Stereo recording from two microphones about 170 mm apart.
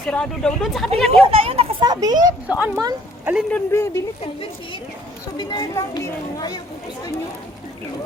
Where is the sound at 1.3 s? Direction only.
35° right (ahead or behind).